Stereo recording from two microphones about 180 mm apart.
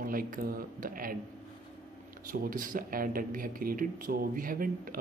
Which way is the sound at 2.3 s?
50° right (ahead or behind).